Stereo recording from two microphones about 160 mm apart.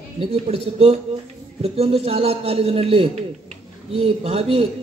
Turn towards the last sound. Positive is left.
turn(degrees=-40)  # may be behind; listen again after turning